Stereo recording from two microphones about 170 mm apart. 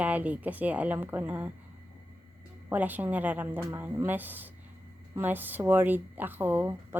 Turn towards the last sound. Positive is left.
turn(degrees=-10)  # may be behind; listen again after turning